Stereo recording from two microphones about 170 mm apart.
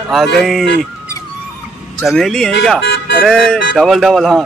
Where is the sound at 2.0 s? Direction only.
Centre (ahead or behind).